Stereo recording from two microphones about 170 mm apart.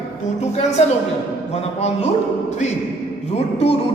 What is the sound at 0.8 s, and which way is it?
Speech, 40° left (ahead or behind).